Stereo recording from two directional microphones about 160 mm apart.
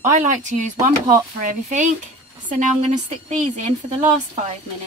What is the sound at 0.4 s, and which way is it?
Speech, 50° right (ahead or behind).